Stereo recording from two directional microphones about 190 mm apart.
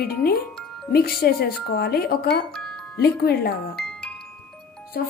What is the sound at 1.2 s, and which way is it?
Speech, 55° left (ahead or behind).